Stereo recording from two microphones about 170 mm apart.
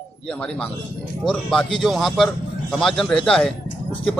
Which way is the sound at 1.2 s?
5° left (ahead or behind).